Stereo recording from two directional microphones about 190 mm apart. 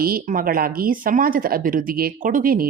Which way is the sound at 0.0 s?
50° right (ahead or behind).